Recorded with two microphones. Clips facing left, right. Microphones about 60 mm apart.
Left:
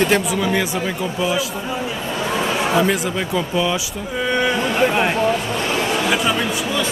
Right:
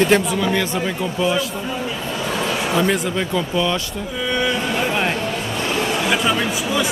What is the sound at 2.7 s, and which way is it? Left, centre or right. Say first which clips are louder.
Speech: right 1 dB; centre.